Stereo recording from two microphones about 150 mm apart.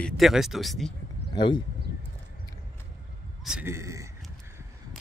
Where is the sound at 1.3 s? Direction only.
30° left (ahead or behind).